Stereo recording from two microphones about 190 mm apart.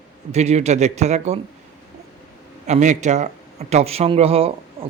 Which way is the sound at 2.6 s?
40° right (ahead or behind).